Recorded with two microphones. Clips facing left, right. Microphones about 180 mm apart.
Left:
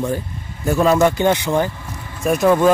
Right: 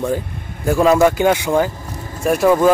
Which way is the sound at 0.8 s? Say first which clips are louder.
Right 2 dB; 5° right (ahead or behind).